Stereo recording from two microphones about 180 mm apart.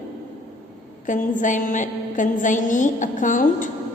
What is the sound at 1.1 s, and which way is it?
A woman's voice, 45° left (ahead or behind).